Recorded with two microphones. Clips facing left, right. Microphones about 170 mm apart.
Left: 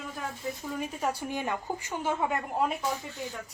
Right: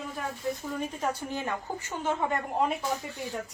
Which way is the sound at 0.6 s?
10° left (ahead or behind).